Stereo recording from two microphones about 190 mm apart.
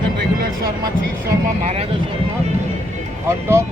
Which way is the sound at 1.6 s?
35° right (ahead or behind).